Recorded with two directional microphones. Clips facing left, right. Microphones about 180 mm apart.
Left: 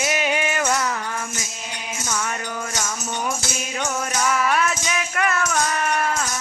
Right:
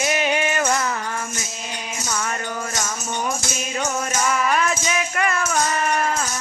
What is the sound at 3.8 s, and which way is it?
Music, centre (ahead or behind).